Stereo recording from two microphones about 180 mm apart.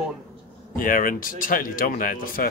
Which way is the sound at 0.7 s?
50° left (ahead or behind).